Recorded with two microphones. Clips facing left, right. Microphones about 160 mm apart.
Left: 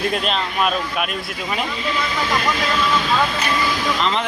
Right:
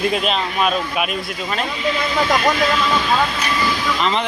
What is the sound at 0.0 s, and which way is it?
Speech, centre (ahead or behind).